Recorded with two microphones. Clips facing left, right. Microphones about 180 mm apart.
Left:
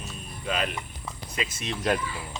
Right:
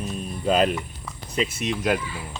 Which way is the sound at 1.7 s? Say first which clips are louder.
Right 1 dB; 10° right (ahead or behind).